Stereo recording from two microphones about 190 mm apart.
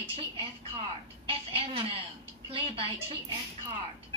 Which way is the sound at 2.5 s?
30° right (ahead or behind).